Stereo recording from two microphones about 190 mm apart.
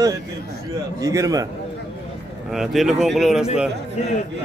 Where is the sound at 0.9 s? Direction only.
15° right (ahead or behind).